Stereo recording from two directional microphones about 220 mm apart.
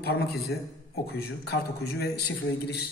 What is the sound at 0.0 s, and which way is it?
A man's voice, 45° left (ahead or behind).